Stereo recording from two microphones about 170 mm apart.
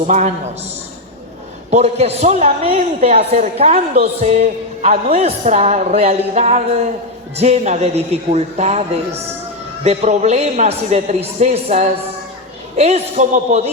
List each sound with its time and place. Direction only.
0.1 s a woman's voice: 40° right (ahead or behind)
1.7 s a woman's voice: 40° right (ahead or behind)